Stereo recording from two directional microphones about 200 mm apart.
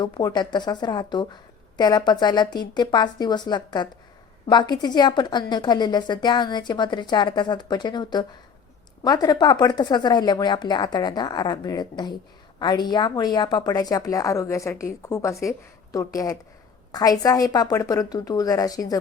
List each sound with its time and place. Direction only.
0.0 s a woman's voice: 20° left (ahead or behind)